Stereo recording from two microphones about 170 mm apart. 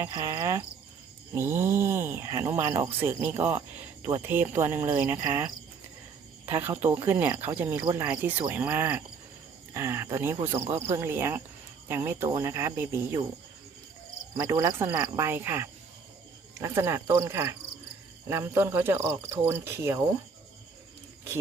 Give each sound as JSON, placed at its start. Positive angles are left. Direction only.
{"t": 0.0, "sound": "speech", "side_deg": -20}
{"t": 6.5, "sound": "speech", "side_deg": -10}
{"t": 7.8, "sound": "speech", "side_deg": -20}
{"t": 8.0, "sound": "speech", "side_deg": -10}
{"t": 14.3, "sound": "speech", "side_deg": -20}